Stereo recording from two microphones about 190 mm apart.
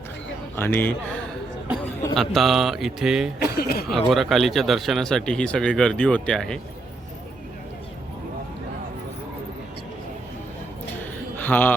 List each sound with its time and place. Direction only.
0.5 s a man's voice: 10° left (ahead or behind)
3.4 s speech: 55° left (ahead or behind)
3.8 s speech: centre (ahead or behind)
11.0 s a sound: 10° left (ahead or behind)